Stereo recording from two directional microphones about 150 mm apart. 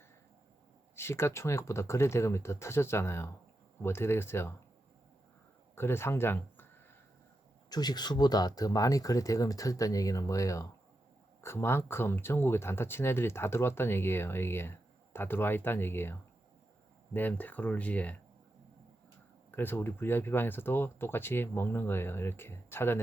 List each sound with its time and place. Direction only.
0.9 s speech: 15° left (ahead or behind)
5.7 s speech: 15° left (ahead or behind)
7.7 s speech: 25° left (ahead or behind)
17.2 s speech: 10° left (ahead or behind)
19.5 s speech: 15° left (ahead or behind)